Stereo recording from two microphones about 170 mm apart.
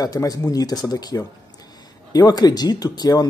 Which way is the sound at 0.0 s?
20° left (ahead or behind).